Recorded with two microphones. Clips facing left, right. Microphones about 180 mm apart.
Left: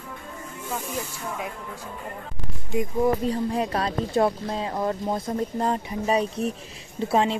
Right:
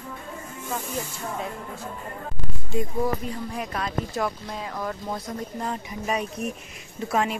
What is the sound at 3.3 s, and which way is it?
Speech, 30° left (ahead or behind).